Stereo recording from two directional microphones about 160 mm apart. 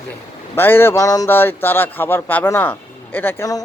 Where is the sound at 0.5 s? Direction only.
15° left (ahead or behind).